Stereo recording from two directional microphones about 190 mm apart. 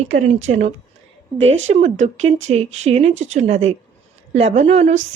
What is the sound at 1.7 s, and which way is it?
A woman's voice, 35° right (ahead or behind).